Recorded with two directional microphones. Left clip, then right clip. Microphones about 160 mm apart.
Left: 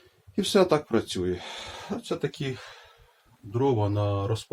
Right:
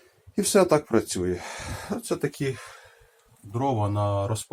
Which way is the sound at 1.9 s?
20° right (ahead or behind).